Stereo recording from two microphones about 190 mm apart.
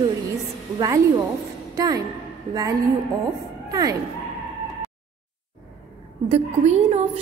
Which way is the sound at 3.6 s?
20° right (ahead or behind).